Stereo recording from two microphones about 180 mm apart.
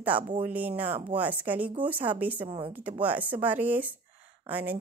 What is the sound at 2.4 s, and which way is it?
Speech, 30° right (ahead or behind).